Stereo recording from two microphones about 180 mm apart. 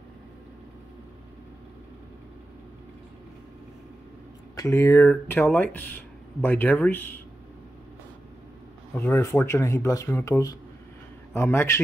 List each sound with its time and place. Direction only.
4.6 s speech: 15° left (ahead or behind)
8.9 s speech: 10° left (ahead or behind)